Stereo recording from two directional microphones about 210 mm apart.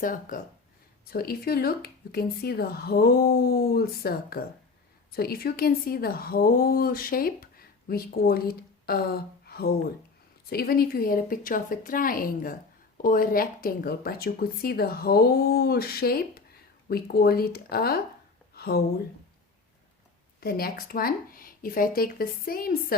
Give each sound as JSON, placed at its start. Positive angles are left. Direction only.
{"t": 0.0, "sound": "speech", "side_deg": 40}
{"t": 18.5, "sound": "a sound", "side_deg": 45}
{"t": 20.4, "sound": "speech", "side_deg": 45}